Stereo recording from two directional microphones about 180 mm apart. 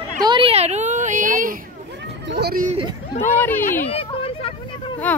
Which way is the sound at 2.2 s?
65° right (ahead or behind).